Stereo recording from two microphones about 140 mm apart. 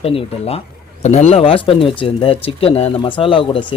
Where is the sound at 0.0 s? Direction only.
45° left (ahead or behind).